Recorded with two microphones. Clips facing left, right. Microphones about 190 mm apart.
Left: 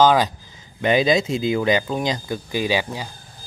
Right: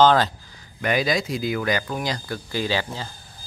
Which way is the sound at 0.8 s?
25° left (ahead or behind).